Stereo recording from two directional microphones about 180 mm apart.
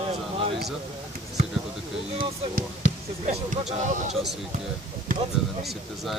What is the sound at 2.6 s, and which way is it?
Speech, 40° right (ahead or behind).